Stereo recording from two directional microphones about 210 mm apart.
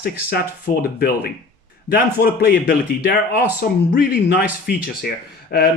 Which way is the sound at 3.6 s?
45° left (ahead or behind).